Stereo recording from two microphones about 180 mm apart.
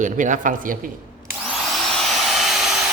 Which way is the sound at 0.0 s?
45° right (ahead or behind).